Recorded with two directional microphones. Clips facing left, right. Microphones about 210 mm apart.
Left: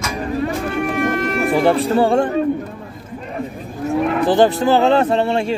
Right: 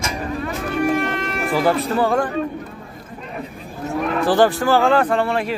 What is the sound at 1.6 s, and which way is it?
Speech, 30° left (ahead or behind).